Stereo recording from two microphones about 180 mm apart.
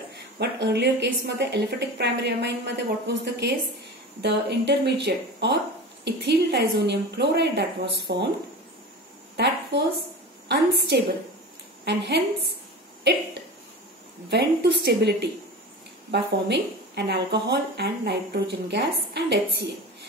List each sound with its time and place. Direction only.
0.1 s a woman's voice: 70° right (ahead or behind)
9.4 s a woman's voice: 70° right (ahead or behind)
14.3 s a woman's voice: 70° right (ahead or behind)